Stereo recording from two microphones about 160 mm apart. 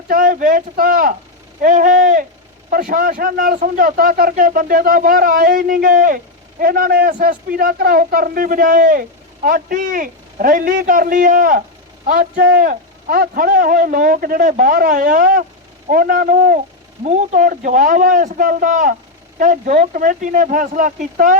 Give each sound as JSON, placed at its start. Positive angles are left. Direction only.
{"t": 0.1, "sound": "speech", "side_deg": -60}
{"t": 1.6, "sound": "a sound", "side_deg": -60}
{"t": 2.6, "sound": "a man's voice", "side_deg": -65}
{"t": 17.0, "sound": "a man's voice", "side_deg": -45}